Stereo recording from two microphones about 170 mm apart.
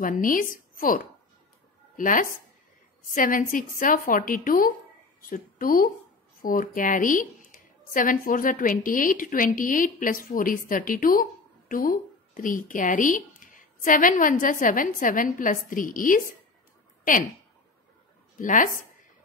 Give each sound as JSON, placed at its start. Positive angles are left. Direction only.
{"t": 0.0, "sound": "speech", "side_deg": 55}
{"t": 18.4, "sound": "speech", "side_deg": 50}